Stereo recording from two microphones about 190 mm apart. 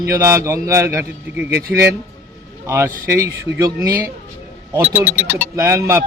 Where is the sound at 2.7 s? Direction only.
15° right (ahead or behind).